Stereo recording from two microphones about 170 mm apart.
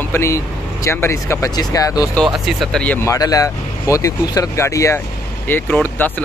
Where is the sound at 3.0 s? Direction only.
20° left (ahead or behind).